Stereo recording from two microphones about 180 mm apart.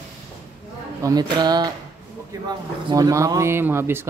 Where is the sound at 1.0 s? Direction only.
20° right (ahead or behind).